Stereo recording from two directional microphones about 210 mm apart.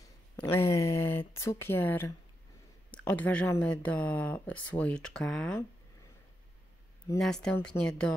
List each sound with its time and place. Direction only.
0.0 s a sound: 10° left (ahead or behind)
1.3 s speech: 15° left (ahead or behind)
7.2 s speech: centre (ahead or behind)